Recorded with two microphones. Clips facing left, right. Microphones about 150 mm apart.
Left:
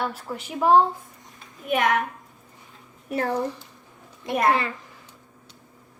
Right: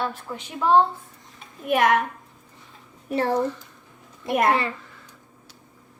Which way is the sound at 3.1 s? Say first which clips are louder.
Right 2 dB; 30° right (ahead or behind).